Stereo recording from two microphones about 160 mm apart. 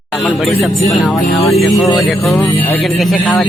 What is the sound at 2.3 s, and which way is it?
Speech, 15° left (ahead or behind).